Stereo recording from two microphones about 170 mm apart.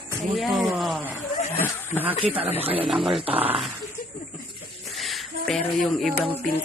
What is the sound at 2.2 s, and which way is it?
Speech, 35° right (ahead or behind).